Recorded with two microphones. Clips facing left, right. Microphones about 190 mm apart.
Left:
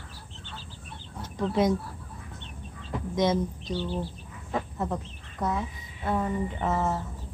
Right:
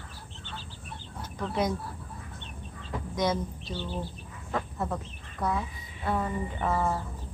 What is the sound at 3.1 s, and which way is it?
Speech, 20° left (ahead or behind).